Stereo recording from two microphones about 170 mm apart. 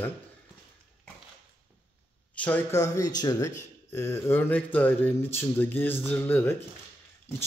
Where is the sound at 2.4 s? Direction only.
15° left (ahead or behind).